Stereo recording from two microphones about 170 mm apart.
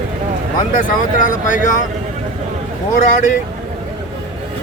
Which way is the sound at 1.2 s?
50° left (ahead or behind).